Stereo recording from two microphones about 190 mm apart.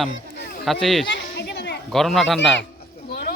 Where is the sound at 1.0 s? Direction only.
65° left (ahead or behind).